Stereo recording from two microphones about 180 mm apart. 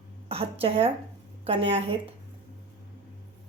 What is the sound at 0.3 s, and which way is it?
A woman's voice, 30° right (ahead or behind).